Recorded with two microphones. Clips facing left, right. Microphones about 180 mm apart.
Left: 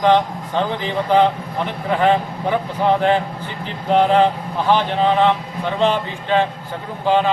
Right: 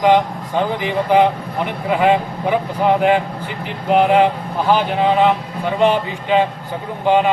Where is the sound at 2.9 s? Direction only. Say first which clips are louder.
Right 2 dB; 10° right (ahead or behind).